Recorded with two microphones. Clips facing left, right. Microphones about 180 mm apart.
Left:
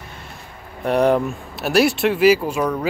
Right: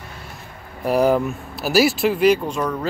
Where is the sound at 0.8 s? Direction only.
Centre (ahead or behind).